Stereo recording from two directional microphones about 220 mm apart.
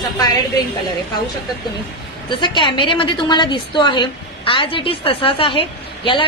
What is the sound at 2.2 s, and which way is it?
A woman's voice, 20° left (ahead or behind).